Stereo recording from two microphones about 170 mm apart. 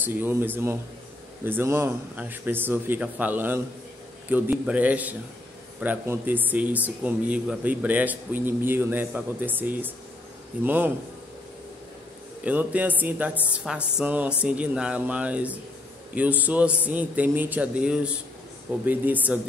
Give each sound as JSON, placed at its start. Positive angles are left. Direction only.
{"t": 0.0, "sound": "speech", "side_deg": -15}
{"t": 12.4, "sound": "speech", "side_deg": -10}